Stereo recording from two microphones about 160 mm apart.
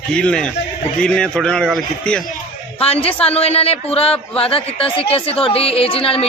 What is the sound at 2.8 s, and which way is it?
A woman's voice, 35° left (ahead or behind).